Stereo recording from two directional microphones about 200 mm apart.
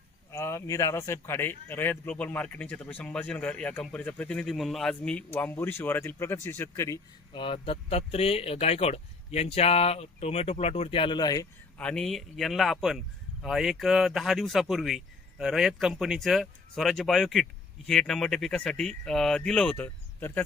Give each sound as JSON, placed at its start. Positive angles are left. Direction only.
{"t": 0.3, "sound": "speech", "side_deg": 15}
{"t": 7.4, "sound": "speech", "side_deg": 25}
{"t": 11.8, "sound": "speech", "side_deg": 5}